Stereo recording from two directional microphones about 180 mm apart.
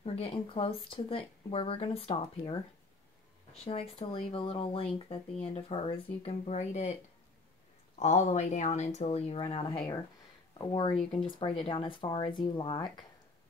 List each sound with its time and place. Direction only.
0.0 s speech: 30° left (ahead or behind)
3.6 s speech: 30° left (ahead or behind)
8.0 s speech: 40° left (ahead or behind); by 13.0 s 25° left (ahead or behind)